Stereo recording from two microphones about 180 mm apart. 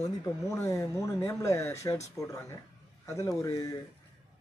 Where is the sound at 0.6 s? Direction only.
15° left (ahead or behind).